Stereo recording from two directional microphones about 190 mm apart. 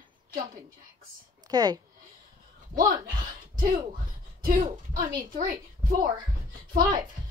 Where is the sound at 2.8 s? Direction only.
45° right (ahead or behind).